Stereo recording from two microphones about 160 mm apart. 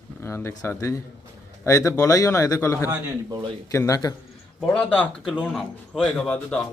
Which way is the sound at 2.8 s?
20° right (ahead or behind).